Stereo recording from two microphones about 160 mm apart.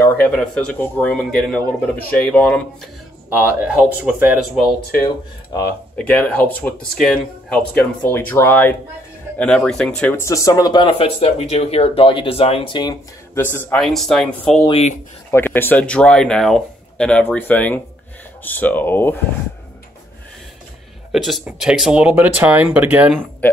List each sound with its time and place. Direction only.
0.3 s speech: 5° left (ahead or behind)
2.3 s speech: 10° left (ahead or behind)
3.3 s speech: 15° right (ahead or behind)
4.9 s speech: 20° left (ahead or behind)
5.9 s speech: 10° left (ahead or behind); by 12.9 s 30° left (ahead or behind)
13.3 s speech: 15° left (ahead or behind)
13.7 s speech: centre (ahead or behind)
14.7 s speech: 45° left (ahead or behind)
15.3 s speech: 15° left (ahead or behind)
21.1 s speech: centre (ahead or behind)